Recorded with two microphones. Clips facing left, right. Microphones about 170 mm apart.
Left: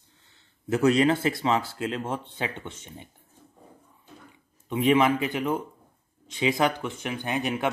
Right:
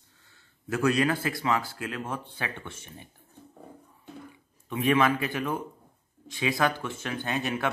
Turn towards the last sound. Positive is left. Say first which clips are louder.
# left 2 dB
turn(degrees=15)  # may be behind; listen again after turning